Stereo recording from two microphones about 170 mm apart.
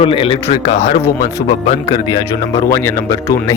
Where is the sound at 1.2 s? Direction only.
30° left (ahead or behind).